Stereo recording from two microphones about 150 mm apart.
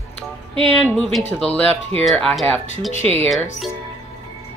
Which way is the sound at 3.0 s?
45° right (ahead or behind).